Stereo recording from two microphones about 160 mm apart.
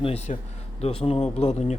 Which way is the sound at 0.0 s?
40° left (ahead or behind).